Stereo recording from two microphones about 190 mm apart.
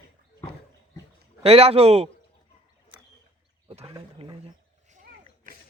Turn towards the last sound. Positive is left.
turn(degrees=-45)  # may be behind; listen again after turning